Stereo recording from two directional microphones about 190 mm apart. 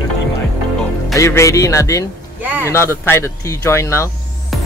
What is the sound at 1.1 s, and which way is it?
Speech, 15° left (ahead or behind).